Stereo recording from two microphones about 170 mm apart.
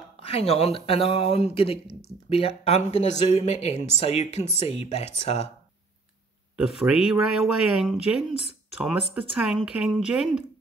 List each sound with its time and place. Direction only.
0.2 s speech: 35° left (ahead or behind)
6.5 s speech: 5° right (ahead or behind)